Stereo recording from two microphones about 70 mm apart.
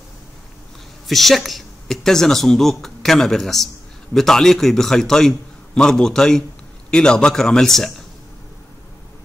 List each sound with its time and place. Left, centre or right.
1.0 s a woman's voice: centre